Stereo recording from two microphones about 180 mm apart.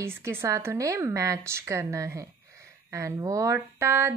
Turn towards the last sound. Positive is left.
turn(degrees=-15)  # may be behind; listen again after turning